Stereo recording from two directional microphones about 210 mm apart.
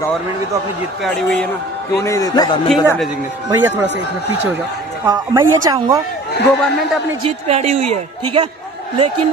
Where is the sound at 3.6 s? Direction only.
10° right (ahead or behind).